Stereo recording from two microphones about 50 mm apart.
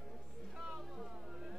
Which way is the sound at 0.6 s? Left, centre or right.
Centre.